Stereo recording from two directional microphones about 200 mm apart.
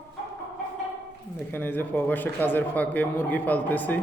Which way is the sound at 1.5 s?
10° left (ahead or behind).